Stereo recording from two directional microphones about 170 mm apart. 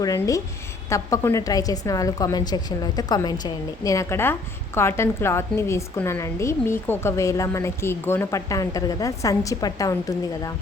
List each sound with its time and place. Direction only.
0.0 s a woman's voice: 20° left (ahead or behind)